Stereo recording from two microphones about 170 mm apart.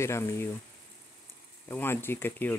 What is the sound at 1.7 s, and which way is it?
Speech, 15° left (ahead or behind).